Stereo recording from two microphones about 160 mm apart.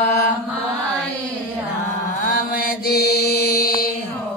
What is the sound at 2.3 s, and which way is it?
Mantra, 60° left (ahead or behind).